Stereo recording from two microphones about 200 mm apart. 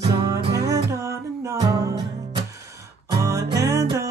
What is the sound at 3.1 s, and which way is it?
Music, 15° right (ahead or behind).